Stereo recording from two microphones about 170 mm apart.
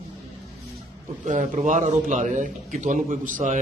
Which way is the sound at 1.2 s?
50° right (ahead or behind).